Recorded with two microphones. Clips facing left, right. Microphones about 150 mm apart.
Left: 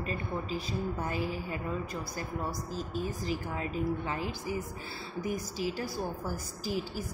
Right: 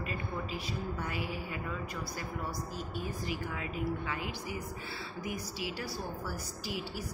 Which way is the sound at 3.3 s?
35° left (ahead or behind).